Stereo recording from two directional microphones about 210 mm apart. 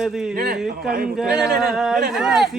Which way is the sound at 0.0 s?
5° right (ahead or behind).